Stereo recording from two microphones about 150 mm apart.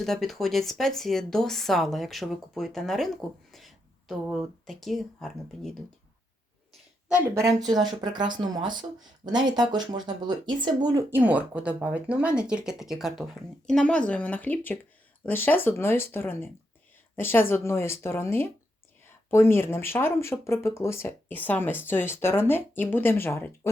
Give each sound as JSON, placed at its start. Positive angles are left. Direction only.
{"t": 0.0, "sound": "speech", "side_deg": 0}
{"t": 7.3, "sound": "speech", "side_deg": -20}
{"t": 11.1, "sound": "speech", "side_deg": -10}